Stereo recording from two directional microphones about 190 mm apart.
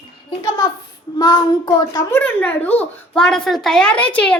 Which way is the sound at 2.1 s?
10° left (ahead or behind).